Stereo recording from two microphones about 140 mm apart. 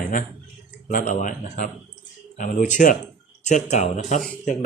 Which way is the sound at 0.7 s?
70° left (ahead or behind).